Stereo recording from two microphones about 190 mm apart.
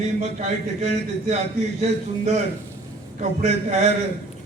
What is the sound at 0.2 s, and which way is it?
A man's voice, 35° right (ahead or behind).